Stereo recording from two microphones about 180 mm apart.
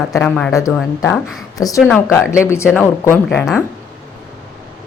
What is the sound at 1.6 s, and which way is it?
Speech, 20° left (ahead or behind).